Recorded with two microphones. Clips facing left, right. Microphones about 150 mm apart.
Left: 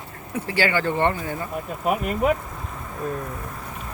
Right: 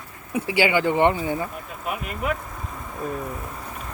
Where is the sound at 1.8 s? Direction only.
40° left (ahead or behind).